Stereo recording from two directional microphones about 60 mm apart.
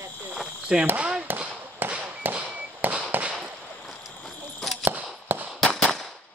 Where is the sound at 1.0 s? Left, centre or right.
Centre.